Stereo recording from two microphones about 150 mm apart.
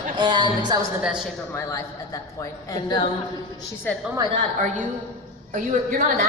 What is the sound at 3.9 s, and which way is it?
Speech, 15° left (ahead or behind).